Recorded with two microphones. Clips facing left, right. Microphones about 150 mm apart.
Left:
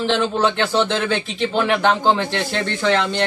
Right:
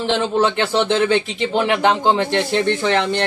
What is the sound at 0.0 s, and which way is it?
A man's voice, 20° right (ahead or behind).